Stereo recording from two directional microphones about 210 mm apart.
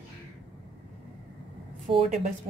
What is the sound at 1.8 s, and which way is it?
Speech, 30° right (ahead or behind).